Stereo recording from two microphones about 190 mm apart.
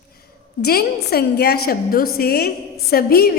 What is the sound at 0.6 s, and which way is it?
A woman's voice, 55° left (ahead or behind).